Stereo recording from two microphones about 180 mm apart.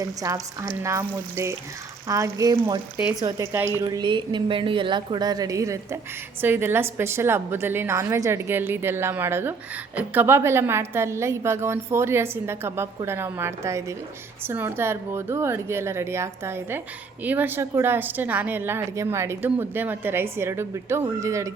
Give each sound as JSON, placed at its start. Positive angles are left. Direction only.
{"t": 0.0, "sound": "a woman's voice", "side_deg": -20}